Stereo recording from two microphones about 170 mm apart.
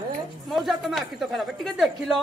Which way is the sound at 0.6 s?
Centre (ahead or behind).